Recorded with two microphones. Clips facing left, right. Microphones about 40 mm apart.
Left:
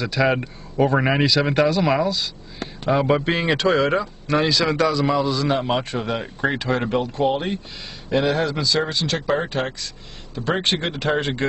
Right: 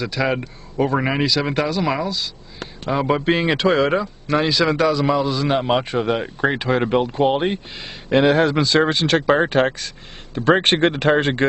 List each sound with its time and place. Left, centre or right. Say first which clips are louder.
0.0 s a man's voice: left 1 dB; centre; by 7.6 s right
8.1 s speech: right 5 dB; right